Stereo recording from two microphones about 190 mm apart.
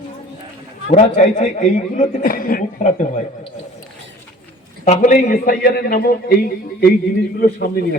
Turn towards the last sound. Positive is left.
turn(degrees=50)  # may be behind; listen again after turning